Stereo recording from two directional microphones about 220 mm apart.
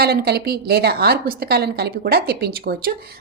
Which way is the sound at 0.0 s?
45° right (ahead or behind).